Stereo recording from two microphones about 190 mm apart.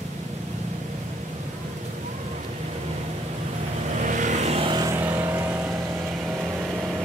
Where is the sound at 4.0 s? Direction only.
40° right (ahead or behind); by 5.7 s 10° right (ahead or behind).